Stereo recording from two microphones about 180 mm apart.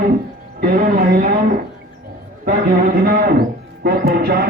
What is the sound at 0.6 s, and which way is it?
Speech, 55° right (ahead or behind).